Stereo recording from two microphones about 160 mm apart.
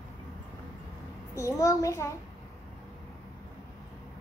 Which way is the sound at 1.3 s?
20° left (ahead or behind).